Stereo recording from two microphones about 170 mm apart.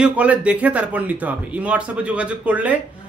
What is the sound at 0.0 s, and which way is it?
A man's voice, 10° right (ahead or behind).